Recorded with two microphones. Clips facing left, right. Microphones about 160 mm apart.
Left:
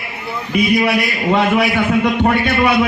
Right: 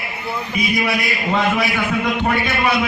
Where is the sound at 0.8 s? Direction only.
60° left (ahead or behind).